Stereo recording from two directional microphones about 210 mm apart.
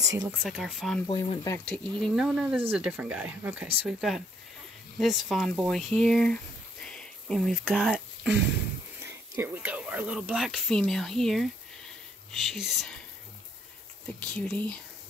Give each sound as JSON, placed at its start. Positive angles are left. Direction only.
{"t": 0.0, "sound": "speech", "side_deg": -15}
{"t": 0.3, "sound": "speech", "side_deg": -5}
{"t": 1.0, "sound": "speech", "side_deg": 20}
{"t": 2.0, "sound": "speech", "side_deg": 0}
{"t": 14.2, "sound": "speech", "side_deg": 5}